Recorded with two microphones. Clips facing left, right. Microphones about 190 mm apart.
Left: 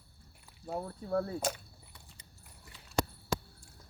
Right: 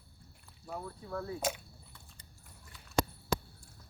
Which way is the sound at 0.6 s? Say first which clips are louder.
Left 5 dB; 35° left (ahead or behind).